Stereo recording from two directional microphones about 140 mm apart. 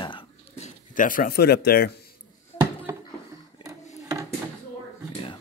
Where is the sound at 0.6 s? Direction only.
70° left (ahead or behind); by 1.9 s 90° left.